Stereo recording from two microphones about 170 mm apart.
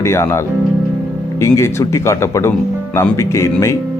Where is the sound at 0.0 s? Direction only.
15° left (ahead or behind).